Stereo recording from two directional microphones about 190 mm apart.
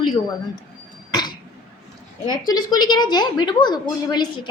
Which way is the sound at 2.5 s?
20° left (ahead or behind).